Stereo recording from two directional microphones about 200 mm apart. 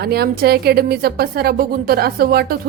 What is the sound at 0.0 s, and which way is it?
A woman's voice, 50° right (ahead or behind).